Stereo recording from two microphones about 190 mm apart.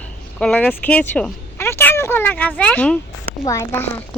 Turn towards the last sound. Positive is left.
turn(degrees=10)  # may be behind; listen again after turning